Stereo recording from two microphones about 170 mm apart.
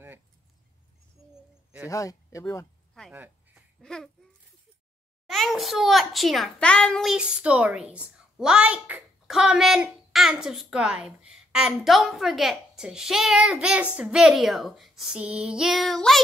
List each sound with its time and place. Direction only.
1.3 s bird: 10° right (ahead or behind)
1.9 s speech: 20° left (ahead or behind)
2.9 s a sound: centre (ahead or behind)
3.8 s a child's voice: 5° left (ahead or behind)
5.2 s a child's voice: centre (ahead or behind)